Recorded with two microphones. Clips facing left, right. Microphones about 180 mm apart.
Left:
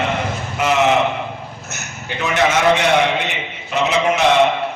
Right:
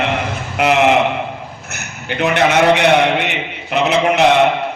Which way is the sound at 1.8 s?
60° right (ahead or behind).